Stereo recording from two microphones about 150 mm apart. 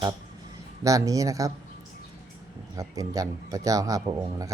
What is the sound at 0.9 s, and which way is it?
Speech, 25° right (ahead or behind).